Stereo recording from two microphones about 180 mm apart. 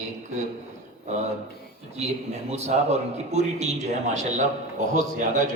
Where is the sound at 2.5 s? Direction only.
35° right (ahead or behind).